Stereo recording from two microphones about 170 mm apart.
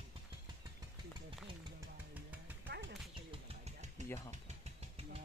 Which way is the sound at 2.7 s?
80° right.